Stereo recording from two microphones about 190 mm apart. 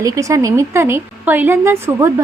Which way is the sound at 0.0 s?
15° right (ahead or behind).